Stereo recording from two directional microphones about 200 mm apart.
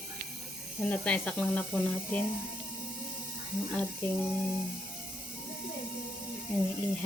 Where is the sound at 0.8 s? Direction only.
5° left (ahead or behind).